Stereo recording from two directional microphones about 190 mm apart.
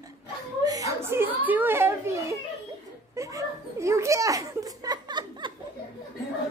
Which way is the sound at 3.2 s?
15° right (ahead or behind).